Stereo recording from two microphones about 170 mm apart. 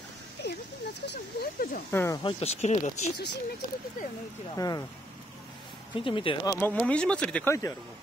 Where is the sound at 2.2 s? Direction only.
40° left (ahead or behind).